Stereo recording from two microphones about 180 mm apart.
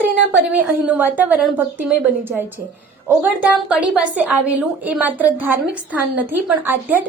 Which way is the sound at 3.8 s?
10° right (ahead or behind).